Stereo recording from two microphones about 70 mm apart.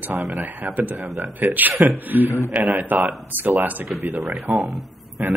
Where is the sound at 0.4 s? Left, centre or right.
Right.